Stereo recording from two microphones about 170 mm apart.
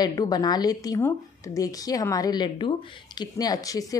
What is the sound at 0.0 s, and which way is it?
Speech, 25° left (ahead or behind).